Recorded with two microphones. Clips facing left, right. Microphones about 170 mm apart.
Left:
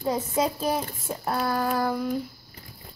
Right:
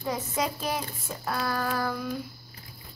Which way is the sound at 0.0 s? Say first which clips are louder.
Left 5 dB; 30° left (ahead or behind).